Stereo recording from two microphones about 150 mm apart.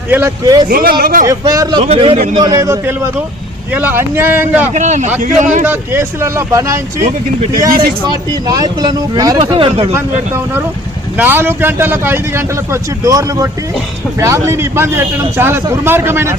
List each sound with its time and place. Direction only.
0.1 s speech: 15° right (ahead or behind)
0.7 s speech: 80° right
1.2 s speech: 25° right (ahead or behind)
1.8 s speech: 40° right (ahead or behind)
2.3 s a man's voice: 25° right (ahead or behind)
4.7 s a man's voice: 50° right (ahead or behind)
5.6 s speech: 15° right (ahead or behind)
8.3 s speech: 25° right (ahead or behind)
9.4 s speech: 40° right (ahead or behind)
9.9 s a man's voice: 15° right (ahead or behind)